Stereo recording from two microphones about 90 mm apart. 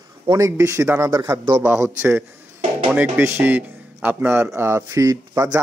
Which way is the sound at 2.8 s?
15° right (ahead or behind).